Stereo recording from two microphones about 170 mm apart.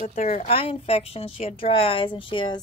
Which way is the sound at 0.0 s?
40° left (ahead or behind).